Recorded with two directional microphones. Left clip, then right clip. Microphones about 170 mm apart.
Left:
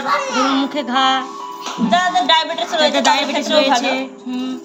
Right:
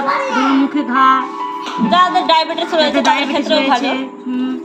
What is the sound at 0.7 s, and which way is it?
Music, 70° left (ahead or behind).